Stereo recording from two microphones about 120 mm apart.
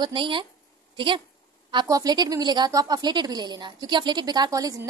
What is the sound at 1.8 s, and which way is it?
Speech, 30° right (ahead or behind).